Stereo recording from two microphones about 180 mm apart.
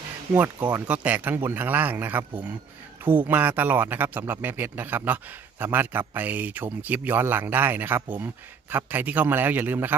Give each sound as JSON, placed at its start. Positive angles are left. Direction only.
{"t": 0.3, "sound": "speech", "side_deg": -10}